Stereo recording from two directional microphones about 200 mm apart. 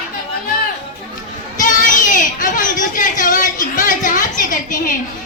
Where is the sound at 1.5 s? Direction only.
40° left (ahead or behind).